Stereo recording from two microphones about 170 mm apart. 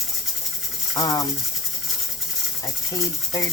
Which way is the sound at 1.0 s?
20° left (ahead or behind).